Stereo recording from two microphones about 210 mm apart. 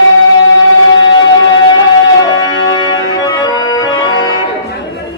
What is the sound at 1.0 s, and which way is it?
Music, 20° left (ahead or behind).